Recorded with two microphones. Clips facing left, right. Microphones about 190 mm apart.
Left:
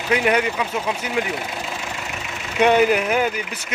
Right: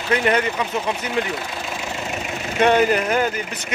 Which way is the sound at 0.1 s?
10° left (ahead or behind).